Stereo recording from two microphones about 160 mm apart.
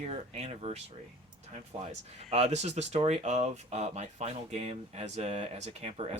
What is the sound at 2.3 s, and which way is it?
Speech, 40° right (ahead or behind).